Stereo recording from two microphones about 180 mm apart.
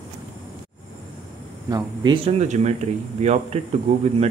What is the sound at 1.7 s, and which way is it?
Speech, 20° right (ahead or behind).